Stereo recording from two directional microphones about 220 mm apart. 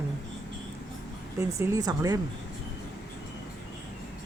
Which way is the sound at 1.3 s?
15° right (ahead or behind).